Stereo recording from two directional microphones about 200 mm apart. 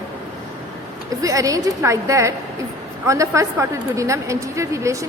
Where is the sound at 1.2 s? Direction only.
15° right (ahead or behind).